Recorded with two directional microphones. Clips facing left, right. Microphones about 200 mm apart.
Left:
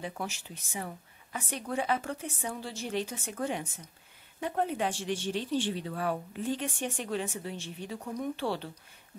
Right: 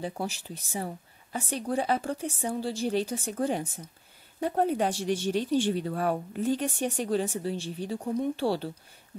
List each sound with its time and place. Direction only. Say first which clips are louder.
0.0 s speech: right 4 dB; 35° right (ahead or behind)